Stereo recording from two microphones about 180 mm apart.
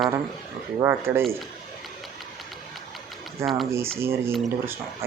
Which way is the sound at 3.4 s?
15° right (ahead or behind).